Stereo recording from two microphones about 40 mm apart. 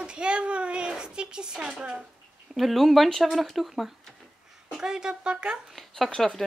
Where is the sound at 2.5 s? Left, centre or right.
Centre.